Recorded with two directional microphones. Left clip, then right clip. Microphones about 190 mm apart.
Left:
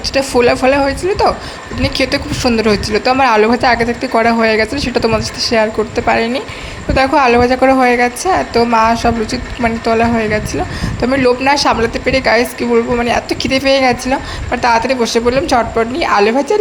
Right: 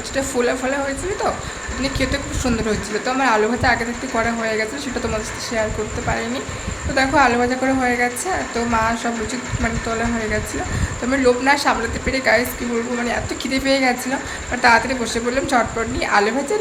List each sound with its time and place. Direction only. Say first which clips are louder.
0.1 s a woman's voice: left 9 dB; 35° left (ahead or behind)
1.8 s a woman's voice: left 8 dB; 40° left (ahead or behind)